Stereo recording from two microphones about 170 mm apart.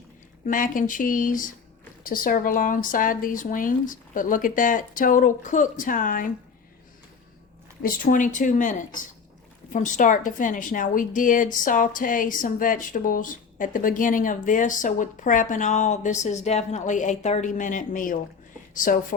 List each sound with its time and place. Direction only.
0.4 s a woman's voice: 55° left (ahead or behind)
7.8 s a woman's voice: 55° left (ahead or behind)